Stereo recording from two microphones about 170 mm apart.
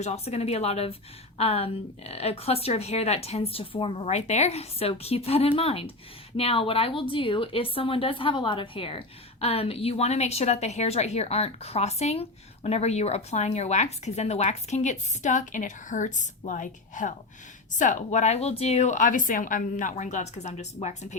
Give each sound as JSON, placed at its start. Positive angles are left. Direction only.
{"t": 0.0, "sound": "a woman's voice", "side_deg": 40}